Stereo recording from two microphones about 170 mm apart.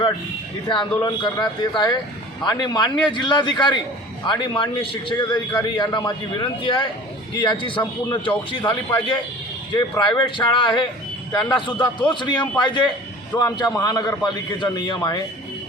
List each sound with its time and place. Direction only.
0.7 s a man's voice: 30° left (ahead or behind)
10.0 s a man's voice: 25° left (ahead or behind)